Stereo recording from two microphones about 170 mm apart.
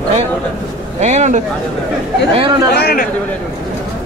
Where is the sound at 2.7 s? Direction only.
65° left (ahead or behind).